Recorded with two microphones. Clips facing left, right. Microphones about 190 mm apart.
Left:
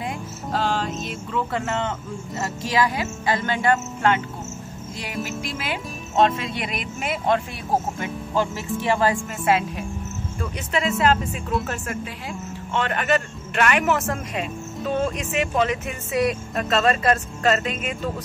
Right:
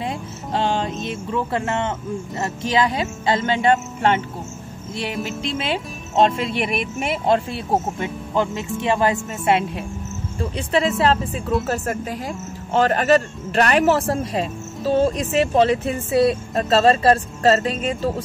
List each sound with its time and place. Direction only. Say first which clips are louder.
0.0 s music: right 2 dB; 25° right (ahead or behind)
1.0 s speech: right 3 dB; 20° right (ahead or behind)
5.4 s speech: right 5 dB; 25° right (ahead or behind)